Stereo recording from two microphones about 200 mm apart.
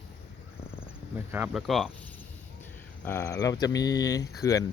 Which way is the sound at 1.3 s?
5° right (ahead or behind).